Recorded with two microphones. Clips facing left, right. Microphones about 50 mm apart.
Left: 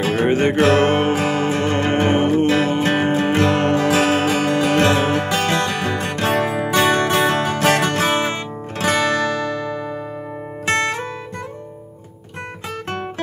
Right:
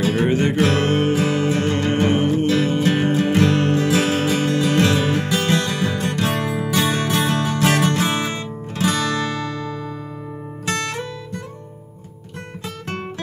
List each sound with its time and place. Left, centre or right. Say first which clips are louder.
0.0 s music: left 2 dB; left